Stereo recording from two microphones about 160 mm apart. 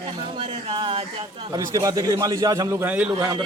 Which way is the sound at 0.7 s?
35° right (ahead or behind).